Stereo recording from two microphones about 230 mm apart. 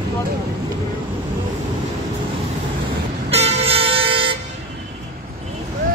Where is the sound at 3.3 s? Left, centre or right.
Right.